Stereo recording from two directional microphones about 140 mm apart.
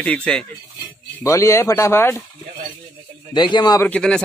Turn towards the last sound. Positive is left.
turn(degrees=10)  # may be behind; listen again after turning